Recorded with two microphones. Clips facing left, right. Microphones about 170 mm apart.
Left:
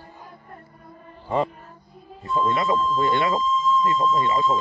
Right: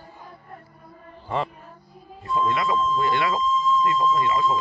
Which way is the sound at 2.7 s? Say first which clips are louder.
Left 1 dB; centre (ahead or behind).